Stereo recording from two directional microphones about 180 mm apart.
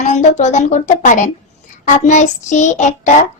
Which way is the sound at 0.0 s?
40° left (ahead or behind).